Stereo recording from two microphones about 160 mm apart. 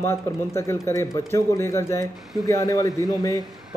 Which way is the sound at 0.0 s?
15° left (ahead or behind).